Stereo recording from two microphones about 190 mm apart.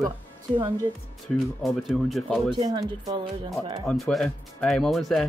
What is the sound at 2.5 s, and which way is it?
Speech, 25° right (ahead or behind).